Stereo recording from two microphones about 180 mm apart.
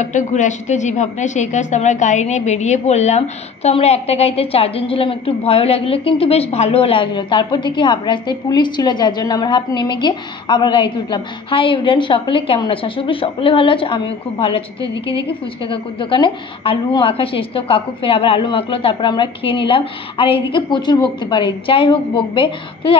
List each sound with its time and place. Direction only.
0.0 s a woman's voice: 45° left (ahead or behind); by 22.9 s 30° left (ahead or behind)